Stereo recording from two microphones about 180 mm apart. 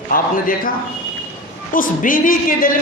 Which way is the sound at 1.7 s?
50° left (ahead or behind).